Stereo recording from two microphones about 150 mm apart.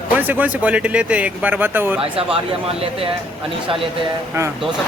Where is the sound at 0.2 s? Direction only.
10° right (ahead or behind).